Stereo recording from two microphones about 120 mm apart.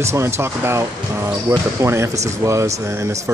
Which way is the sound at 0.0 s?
25° right (ahead or behind).